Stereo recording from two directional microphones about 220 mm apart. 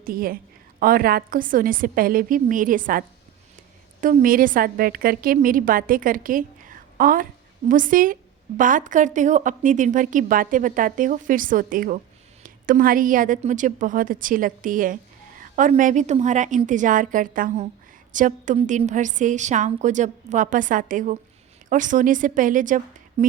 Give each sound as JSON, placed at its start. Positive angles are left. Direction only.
{"t": 0.0, "sound": "a woman's voice", "side_deg": -40}
{"t": 4.0, "sound": "a woman's voice", "side_deg": -40}